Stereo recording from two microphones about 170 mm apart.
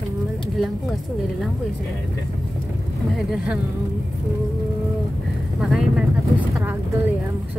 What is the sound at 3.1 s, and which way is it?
Speech, 5° right (ahead or behind).